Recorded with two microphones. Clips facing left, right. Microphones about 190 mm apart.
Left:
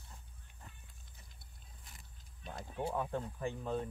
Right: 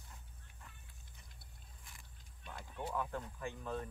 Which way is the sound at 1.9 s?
35° left (ahead or behind).